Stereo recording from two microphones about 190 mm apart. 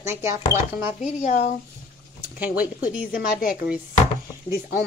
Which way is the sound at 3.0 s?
50° left (ahead or behind).